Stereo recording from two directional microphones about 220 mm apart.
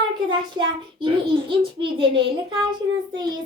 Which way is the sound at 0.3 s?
20° right (ahead or behind).